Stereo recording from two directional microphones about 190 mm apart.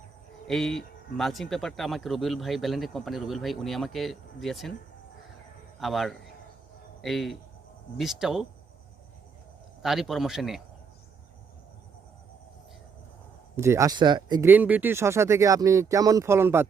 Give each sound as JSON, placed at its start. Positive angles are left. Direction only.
{"t": 0.4, "sound": "speech", "side_deg": 0}
{"t": 5.8, "sound": "speech", "side_deg": 0}
{"t": 9.8, "sound": "speech", "side_deg": 0}
{"t": 13.6, "sound": "speech", "side_deg": -15}
{"t": 14.4, "sound": "speech", "side_deg": -10}